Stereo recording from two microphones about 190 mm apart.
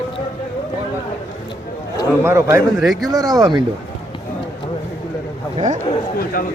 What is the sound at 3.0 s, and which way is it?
Speech, 20° right (ahead or behind).